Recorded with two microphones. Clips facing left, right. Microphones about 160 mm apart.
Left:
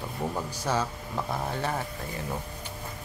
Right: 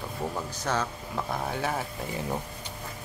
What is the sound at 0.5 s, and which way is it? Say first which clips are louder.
Speech: left 1 dB; 10° left (ahead or behind).